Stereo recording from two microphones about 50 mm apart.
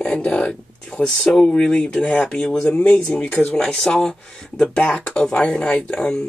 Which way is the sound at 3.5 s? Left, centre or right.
Centre.